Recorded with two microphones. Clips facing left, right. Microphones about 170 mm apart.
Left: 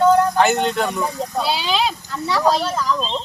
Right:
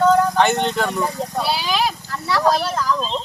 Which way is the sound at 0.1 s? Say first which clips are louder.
Left 1 dB; 5° left (ahead or behind).